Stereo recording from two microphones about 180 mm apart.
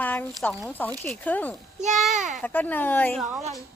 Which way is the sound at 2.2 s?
45° right (ahead or behind).